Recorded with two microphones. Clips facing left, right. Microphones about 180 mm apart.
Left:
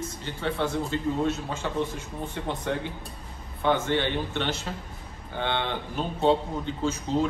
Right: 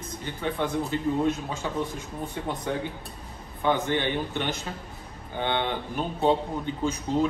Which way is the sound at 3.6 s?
15° right (ahead or behind).